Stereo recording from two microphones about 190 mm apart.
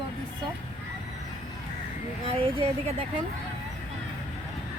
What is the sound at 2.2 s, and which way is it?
Speech, 30° right (ahead or behind).